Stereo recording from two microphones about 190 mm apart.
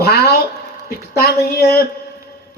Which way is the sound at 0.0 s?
55° left (ahead or behind).